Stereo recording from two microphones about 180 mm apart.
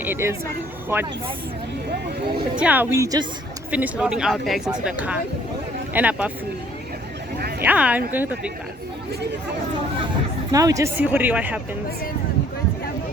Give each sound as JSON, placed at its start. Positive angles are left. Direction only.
{"t": 0.0, "sound": "speech", "side_deg": -15}
{"t": 1.9, "sound": "speech", "side_deg": -60}
{"t": 2.6, "sound": "speech", "side_deg": -10}
{"t": 3.7, "sound": "speech", "side_deg": -10}
{"t": 7.6, "sound": "speech", "side_deg": -10}
{"t": 10.5, "sound": "speech", "side_deg": -20}